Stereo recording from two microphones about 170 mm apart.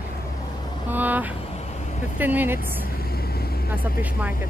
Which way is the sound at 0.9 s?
10° right (ahead or behind).